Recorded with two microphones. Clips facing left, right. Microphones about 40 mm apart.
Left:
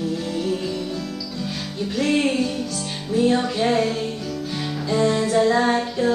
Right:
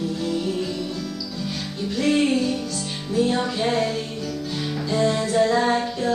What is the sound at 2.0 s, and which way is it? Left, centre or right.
Music, centre.